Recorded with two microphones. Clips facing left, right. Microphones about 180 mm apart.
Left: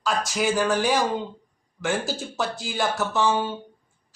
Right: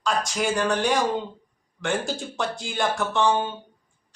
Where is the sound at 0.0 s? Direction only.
5° left (ahead or behind).